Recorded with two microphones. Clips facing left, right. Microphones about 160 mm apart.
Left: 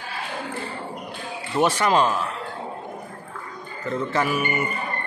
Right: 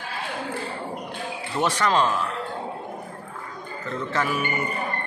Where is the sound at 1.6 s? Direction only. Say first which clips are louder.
Left 3 dB; 10° left (ahead or behind).